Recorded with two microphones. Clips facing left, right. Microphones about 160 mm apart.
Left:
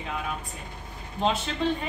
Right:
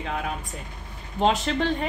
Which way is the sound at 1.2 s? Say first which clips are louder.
Right 4 dB; 85° right.